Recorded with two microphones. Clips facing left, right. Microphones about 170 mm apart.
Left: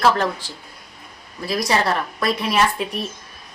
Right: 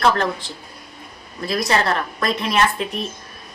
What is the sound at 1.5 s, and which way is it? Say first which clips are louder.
A woman's voice: even; 10° left (ahead or behind).